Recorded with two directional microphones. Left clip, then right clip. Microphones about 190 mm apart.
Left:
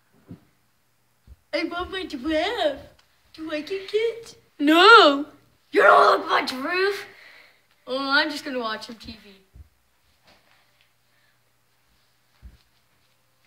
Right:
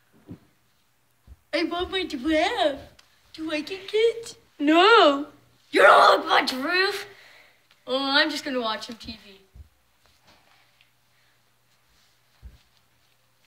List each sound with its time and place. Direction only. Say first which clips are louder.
1.5 s speech: right 1 dB; 5° left (ahead or behind)
4.6 s speech: left 4 dB; 25° left (ahead or behind)
5.7 s speech: even; 5° right (ahead or behind)
7.3 s speech: left 2 dB; 10° left (ahead or behind)